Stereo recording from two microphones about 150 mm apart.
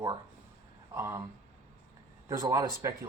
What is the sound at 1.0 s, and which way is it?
Speech, 20° right (ahead or behind).